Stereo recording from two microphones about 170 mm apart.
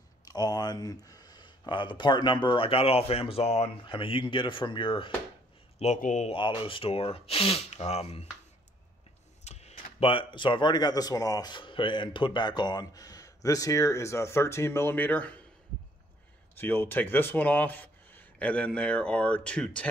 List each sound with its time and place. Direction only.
0.2 s speech: 25° left (ahead or behind)
5.8 s speech: 45° left (ahead or behind)
6.3 s speech: 30° left (ahead or behind)
9.4 s speech: 40° left (ahead or behind); by 15.4 s 10° left (ahead or behind)
16.5 s speech: 10° left (ahead or behind)